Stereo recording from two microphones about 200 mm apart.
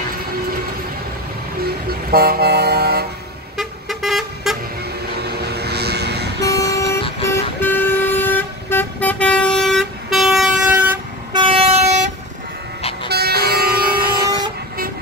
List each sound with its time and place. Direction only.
2.0 s vehicle: 50° right (ahead or behind)
3.5 s vehicle: centre (ahead or behind)
5.2 s vehicle: 55° right (ahead or behind)
6.4 s vehicle: 15° left (ahead or behind); by 11.0 s centre (ahead or behind)
11.3 s vehicle: 25° right (ahead or behind)
13.1 s vehicle: 50° right (ahead or behind)